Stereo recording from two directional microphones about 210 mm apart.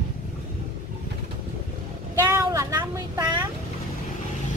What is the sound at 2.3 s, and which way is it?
Vehicle, 15° right (ahead or behind).